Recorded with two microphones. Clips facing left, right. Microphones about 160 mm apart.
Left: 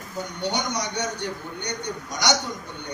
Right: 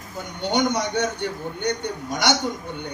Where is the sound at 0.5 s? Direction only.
55° right (ahead or behind).